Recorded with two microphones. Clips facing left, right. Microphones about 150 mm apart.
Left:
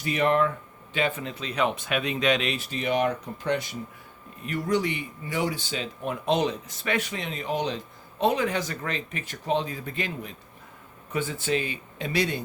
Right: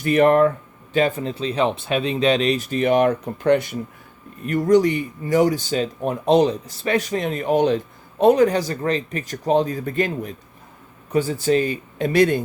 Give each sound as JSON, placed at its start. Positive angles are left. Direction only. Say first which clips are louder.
{"t": 0.0, "sound": "speech", "louder": "right 8 dB", "side_deg": -50}
{"t": 4.4, "sound": "speech", "louder": "right 10 dB", "side_deg": -45}